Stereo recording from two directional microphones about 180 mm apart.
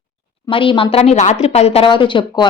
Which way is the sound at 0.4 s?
30° left (ahead or behind).